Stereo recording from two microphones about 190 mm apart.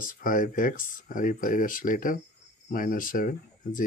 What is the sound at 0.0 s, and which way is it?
Speech, 45° left (ahead or behind).